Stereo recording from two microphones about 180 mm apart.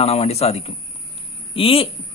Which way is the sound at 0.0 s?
35° left (ahead or behind).